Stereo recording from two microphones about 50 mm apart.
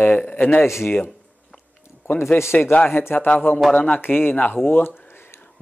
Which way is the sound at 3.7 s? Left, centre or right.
Left.